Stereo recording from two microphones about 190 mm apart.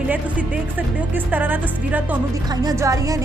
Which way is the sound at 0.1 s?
5° right (ahead or behind).